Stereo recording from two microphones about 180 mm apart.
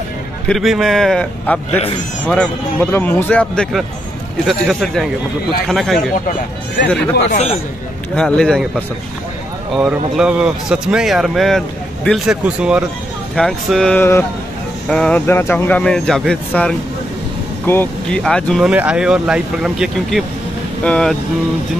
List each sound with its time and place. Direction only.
0.5 s a man's voice: centre (ahead or behind)
7.2 s speech: 40° left (ahead or behind)
8.2 s a man's voice: 5° left (ahead or behind)